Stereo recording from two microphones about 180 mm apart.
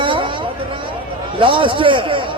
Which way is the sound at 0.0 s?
30° right (ahead or behind).